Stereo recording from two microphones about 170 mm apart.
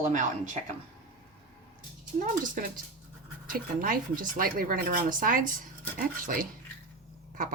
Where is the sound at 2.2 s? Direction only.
50° right (ahead or behind).